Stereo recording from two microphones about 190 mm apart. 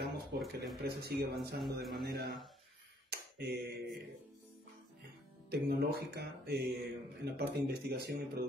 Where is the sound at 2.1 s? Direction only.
60° right (ahead or behind).